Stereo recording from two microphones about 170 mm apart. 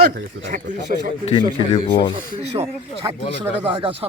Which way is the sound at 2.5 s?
35° right (ahead or behind).